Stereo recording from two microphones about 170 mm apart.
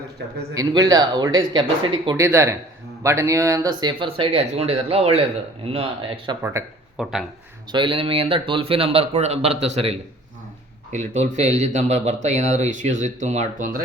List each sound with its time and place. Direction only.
0.2 s a man's voice: 70° right (ahead or behind)
0.5 s speech: 20° right (ahead or behind)
2.2 s a man's voice: 15° right (ahead or behind); by 6.3 s 30° right (ahead or behind)
6.4 s speech: 15° right (ahead or behind)
6.9 s speech: 5° right (ahead or behind)
7.7 s a man's voice: 30° right (ahead or behind); by 13.8 s 50° right (ahead or behind)